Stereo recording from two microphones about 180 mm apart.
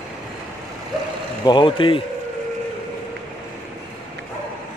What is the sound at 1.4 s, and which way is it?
Speech, 25° left (ahead or behind).